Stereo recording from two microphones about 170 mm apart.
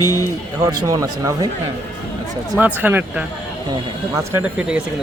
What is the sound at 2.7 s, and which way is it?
Speech, 10° right (ahead or behind).